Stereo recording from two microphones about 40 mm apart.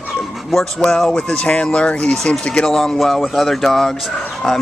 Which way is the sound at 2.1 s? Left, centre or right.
Centre.